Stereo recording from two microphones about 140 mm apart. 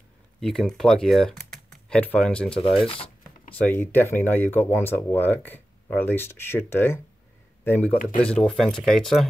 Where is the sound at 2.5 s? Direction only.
40° left (ahead or behind).